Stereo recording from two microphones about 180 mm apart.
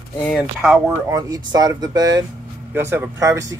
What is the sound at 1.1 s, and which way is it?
Speech, 20° right (ahead or behind).